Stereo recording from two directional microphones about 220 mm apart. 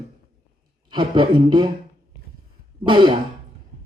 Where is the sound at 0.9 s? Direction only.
20° right (ahead or behind).